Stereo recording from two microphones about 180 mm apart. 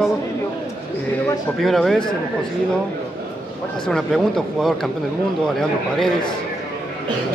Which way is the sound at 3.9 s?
5° left (ahead or behind).